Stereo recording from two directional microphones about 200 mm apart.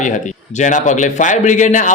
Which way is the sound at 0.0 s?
35° left (ahead or behind).